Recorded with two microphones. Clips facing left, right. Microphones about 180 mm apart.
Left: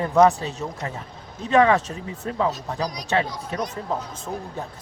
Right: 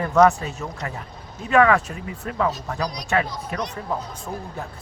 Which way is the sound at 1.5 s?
20° left (ahead or behind).